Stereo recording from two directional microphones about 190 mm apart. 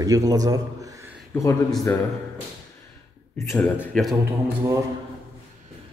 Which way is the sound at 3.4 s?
15° left (ahead or behind).